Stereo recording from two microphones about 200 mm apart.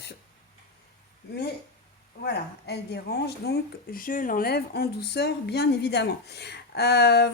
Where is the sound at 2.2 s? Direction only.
55° left (ahead or behind).